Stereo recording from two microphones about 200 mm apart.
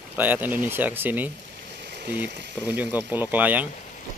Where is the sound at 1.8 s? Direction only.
55° right (ahead or behind).